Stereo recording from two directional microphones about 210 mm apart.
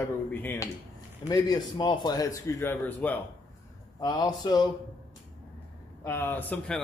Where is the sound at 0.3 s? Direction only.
10° left (ahead or behind).